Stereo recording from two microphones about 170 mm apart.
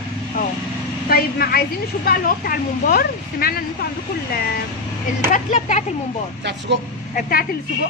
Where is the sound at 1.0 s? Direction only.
65° left (ahead or behind).